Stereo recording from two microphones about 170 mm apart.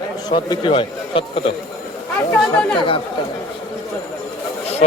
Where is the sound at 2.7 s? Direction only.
30° left (ahead or behind).